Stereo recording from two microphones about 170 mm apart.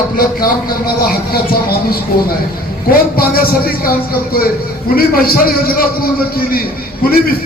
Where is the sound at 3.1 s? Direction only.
60° left (ahead or behind).